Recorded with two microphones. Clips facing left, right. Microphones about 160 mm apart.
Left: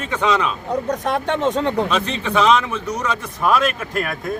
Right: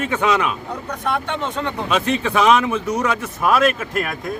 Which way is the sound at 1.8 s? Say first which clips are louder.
Right 2 dB; 10° right (ahead or behind).